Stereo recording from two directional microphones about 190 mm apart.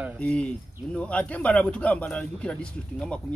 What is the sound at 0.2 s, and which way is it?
Speech, 5° left (ahead or behind).